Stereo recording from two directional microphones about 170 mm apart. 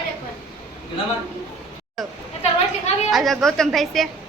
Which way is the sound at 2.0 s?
Centre (ahead or behind).